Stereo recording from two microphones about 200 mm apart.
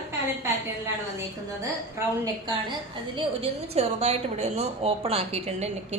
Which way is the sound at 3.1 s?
30° right (ahead or behind).